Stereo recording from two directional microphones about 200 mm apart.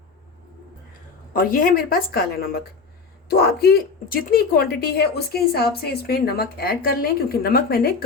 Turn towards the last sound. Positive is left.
turn(degrees=50)  # may be behind; listen again after turning